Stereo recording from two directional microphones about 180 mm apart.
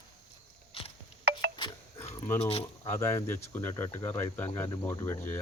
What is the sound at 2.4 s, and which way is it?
Speech, 35° left (ahead or behind).